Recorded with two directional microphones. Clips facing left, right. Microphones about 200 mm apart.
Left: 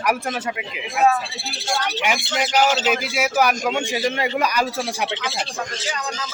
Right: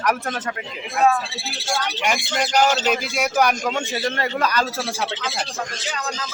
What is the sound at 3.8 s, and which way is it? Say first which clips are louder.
Speech: left 2 dB; 15° left (ahead or behind).